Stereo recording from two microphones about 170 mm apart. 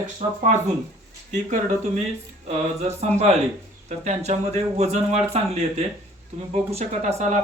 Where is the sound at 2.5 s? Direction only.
40° right (ahead or behind).